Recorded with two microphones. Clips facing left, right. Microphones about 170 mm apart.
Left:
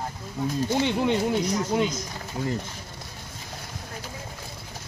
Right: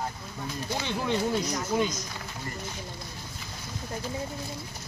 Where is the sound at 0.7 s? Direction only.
20° left (ahead or behind).